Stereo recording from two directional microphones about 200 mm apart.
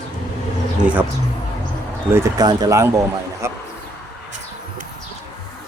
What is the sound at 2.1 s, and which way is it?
Speech, 15° right (ahead or behind).